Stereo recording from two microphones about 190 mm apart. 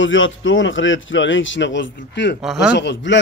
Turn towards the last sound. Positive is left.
turn(degrees=70)  # may be behind; listen again after turning